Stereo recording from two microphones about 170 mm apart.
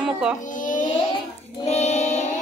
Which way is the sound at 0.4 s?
50° left (ahead or behind).